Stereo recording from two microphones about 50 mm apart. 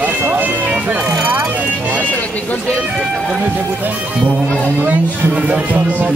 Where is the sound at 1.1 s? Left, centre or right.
Right.